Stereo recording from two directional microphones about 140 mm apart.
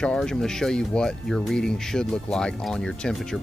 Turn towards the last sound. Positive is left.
turn(degrees=5)  # may be behind; listen again after turning